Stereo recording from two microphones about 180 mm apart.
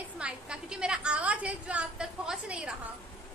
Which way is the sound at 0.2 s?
5° right (ahead or behind).